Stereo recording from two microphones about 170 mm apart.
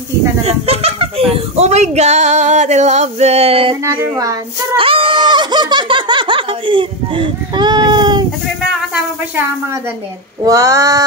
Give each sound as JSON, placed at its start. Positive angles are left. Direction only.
{"t": 0.5, "sound": "speech", "side_deg": -35}
{"t": 3.8, "sound": "female singing", "side_deg": -15}
{"t": 4.7, "sound": "speech", "side_deg": -30}
{"t": 8.9, "sound": "a woman's voice", "side_deg": -10}
{"t": 10.4, "sound": "female singing", "side_deg": -20}